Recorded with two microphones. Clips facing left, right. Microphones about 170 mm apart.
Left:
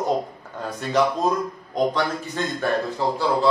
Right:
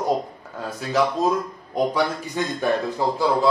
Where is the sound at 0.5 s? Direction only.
5° right (ahead or behind).